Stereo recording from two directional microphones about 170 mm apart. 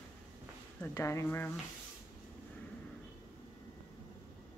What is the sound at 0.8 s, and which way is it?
Speech, 15° left (ahead or behind).